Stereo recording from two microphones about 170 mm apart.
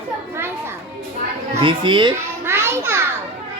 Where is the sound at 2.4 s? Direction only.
15° right (ahead or behind).